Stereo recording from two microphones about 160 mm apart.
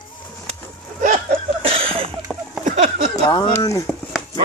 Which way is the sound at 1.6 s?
35° right (ahead or behind).